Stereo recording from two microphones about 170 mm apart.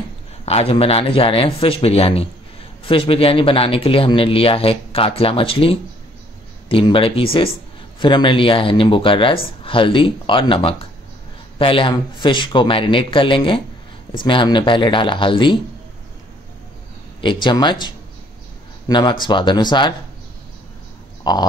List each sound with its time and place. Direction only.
0.5 s speech: 35° left (ahead or behind)
17.2 s speech: 30° left (ahead or behind)
21.2 s a sound: 25° left (ahead or behind)